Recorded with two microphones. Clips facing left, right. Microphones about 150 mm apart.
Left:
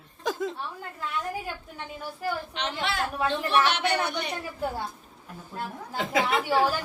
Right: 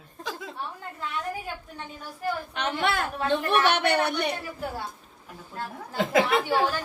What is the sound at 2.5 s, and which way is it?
A woman's voice, 50° right (ahead or behind).